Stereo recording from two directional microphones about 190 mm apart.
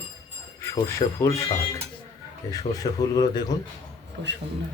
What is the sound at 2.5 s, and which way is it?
Speech, 20° left (ahead or behind).